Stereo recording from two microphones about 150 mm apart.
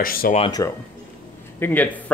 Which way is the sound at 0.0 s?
75° left (ahead or behind).